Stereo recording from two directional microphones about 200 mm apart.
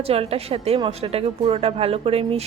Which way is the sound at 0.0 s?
30° right (ahead or behind).